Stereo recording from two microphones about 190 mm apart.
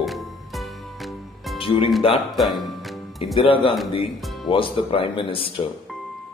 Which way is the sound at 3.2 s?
30° left (ahead or behind).